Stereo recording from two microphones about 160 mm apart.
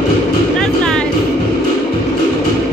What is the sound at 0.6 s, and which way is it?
Music, 5° left (ahead or behind).